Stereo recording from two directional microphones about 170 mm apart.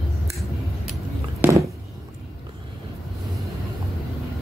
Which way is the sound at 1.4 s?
20° right (ahead or behind).